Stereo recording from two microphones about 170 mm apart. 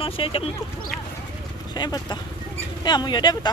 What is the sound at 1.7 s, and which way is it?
Speech, 25° left (ahead or behind).